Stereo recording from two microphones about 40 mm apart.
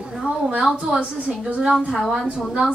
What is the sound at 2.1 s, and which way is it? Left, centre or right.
Speech, right.